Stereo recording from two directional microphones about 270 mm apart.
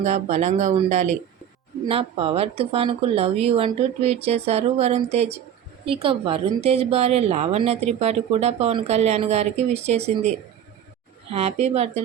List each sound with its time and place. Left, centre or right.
0.0 s a woman's voice: right
11.3 s a woman's voice: right